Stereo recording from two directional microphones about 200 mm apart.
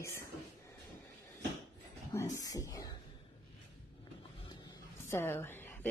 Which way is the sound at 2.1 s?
15° left (ahead or behind).